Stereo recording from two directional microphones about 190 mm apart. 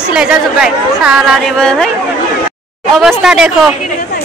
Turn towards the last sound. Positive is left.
turn(degrees=-5)  # may be behind; listen again after turning